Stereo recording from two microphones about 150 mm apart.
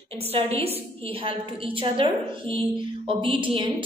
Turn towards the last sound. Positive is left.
turn(degrees=-35)  # may be behind; listen again after turning